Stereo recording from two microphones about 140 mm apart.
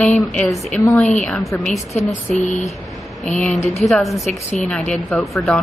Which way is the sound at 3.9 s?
Centre (ahead or behind).